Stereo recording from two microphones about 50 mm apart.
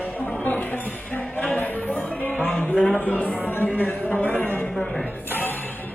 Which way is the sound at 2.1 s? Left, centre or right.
Left.